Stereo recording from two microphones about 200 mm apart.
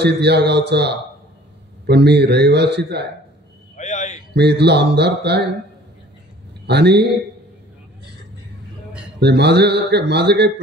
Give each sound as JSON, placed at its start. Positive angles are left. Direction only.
{"t": 0.0, "sound": "a man's voice", "side_deg": -55}
{"t": 3.7, "sound": "a sound", "side_deg": 35}
{"t": 4.4, "sound": "a man's voice", "side_deg": -55}
{"t": 6.6, "sound": "a man's voice", "side_deg": -55}
{"t": 9.2, "sound": "a man's voice", "side_deg": -55}